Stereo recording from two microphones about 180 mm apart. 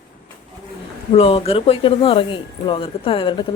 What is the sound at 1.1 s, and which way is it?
Speech, 35° left (ahead or behind).